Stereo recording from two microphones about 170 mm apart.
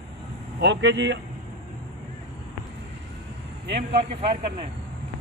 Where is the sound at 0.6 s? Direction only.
90° right.